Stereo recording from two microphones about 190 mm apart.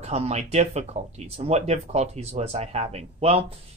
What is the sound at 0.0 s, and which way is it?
Speech, 35° right (ahead or behind).